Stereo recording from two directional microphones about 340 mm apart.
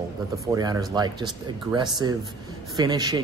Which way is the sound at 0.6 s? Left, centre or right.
Centre.